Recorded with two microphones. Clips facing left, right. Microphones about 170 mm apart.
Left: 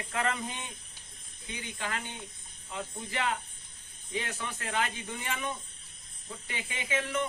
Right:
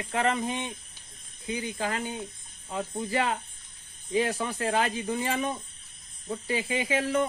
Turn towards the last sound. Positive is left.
turn(degrees=-35)  # may be behind; listen again after turning